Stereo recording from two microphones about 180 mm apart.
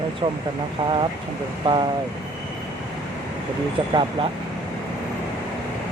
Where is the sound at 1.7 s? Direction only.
25° right (ahead or behind).